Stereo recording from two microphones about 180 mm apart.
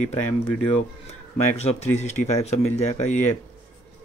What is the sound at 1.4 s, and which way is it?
A man's voice, 35° left (ahead or behind).